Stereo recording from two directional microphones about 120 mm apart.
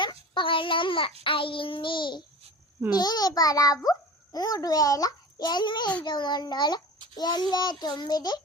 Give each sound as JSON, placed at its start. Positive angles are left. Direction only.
{"t": 0.3, "sound": "babbling", "side_deg": 45}
{"t": 1.2, "sound": "child singing", "side_deg": 45}
{"t": 2.9, "sound": "a child's voice", "side_deg": 35}